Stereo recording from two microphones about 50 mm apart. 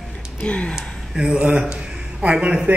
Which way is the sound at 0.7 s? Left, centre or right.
Centre.